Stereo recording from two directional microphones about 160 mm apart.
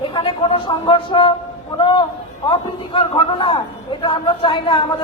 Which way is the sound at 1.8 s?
30° left (ahead or behind).